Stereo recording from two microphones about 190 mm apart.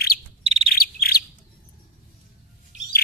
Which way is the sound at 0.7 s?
50° left (ahead or behind).